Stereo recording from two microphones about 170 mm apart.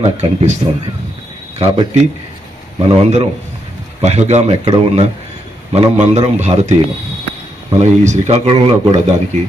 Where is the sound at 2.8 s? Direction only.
40° right (ahead or behind).